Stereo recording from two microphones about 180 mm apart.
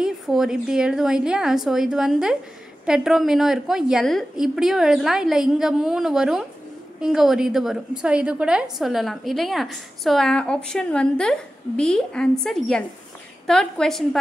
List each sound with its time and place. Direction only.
0.0 s a woman's voice: 5° right (ahead or behind)